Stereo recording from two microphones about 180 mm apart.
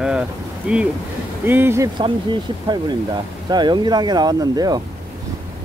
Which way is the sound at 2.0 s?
25° right (ahead or behind).